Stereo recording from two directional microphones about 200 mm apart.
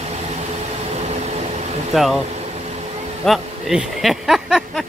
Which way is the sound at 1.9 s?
Centre (ahead or behind).